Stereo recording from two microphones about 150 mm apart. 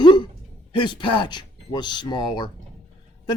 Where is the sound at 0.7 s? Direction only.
35° left (ahead or behind).